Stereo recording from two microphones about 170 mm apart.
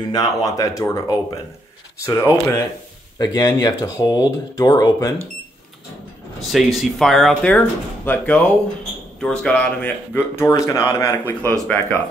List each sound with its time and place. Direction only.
0.1 s speech: 20° left (ahead or behind)
6.4 s speech: centre (ahead or behind)